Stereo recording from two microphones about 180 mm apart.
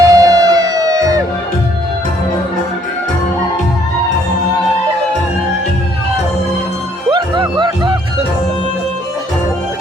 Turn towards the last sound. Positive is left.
turn(degrees=-25)  # may be behind; listen again after turning